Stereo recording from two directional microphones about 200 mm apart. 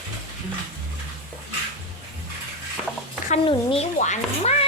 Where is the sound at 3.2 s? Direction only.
30° left (ahead or behind).